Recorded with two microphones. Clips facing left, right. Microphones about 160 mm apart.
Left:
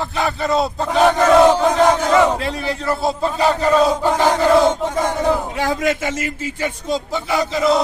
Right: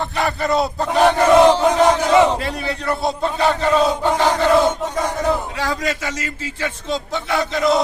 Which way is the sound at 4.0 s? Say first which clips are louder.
Left 1 dB; 5° left (ahead or behind).